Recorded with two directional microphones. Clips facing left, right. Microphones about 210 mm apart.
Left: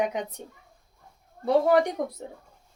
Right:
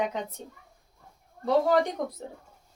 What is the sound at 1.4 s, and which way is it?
Speech, 15° left (ahead or behind).